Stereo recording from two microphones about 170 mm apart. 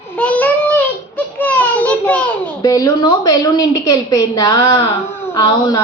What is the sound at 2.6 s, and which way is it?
A woman's voice, 25° left (ahead or behind).